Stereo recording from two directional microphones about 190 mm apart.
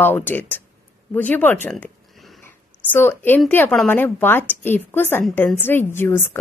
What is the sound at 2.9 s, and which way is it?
A woman's voice, 10° left (ahead or behind).